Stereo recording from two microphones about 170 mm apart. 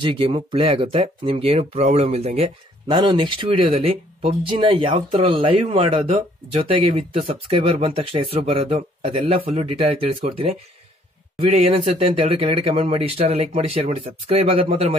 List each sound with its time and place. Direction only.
0.0 s speech: 30° right (ahead or behind)